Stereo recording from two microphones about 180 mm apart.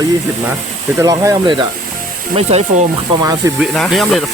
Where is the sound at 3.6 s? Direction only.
Centre (ahead or behind).